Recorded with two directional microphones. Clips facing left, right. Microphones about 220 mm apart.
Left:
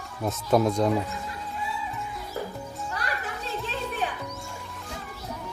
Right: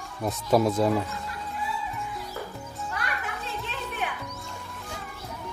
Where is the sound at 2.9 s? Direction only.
35° left (ahead or behind).